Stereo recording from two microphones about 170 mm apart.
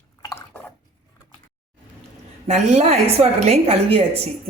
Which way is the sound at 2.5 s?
40° right (ahead or behind).